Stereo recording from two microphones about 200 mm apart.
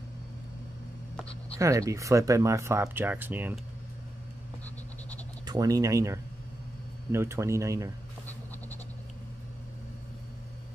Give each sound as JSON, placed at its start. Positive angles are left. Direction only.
{"t": 1.6, "sound": "speech", "side_deg": -15}
{"t": 5.5, "sound": "speech", "side_deg": -20}